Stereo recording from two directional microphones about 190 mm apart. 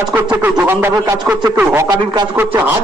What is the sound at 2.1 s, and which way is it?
Speech, 20° right (ahead or behind).